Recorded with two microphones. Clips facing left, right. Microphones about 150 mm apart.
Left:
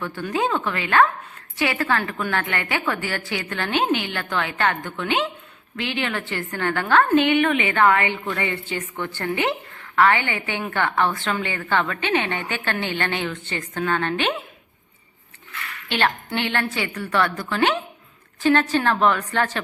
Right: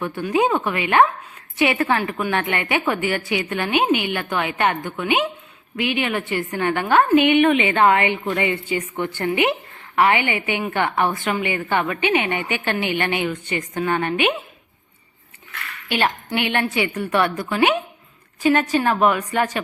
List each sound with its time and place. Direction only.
0.0 s a woman's voice: 15° right (ahead or behind)
15.9 s a woman's voice: 10° right (ahead or behind)